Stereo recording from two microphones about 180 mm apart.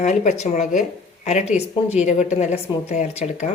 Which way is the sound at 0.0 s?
40° left (ahead or behind).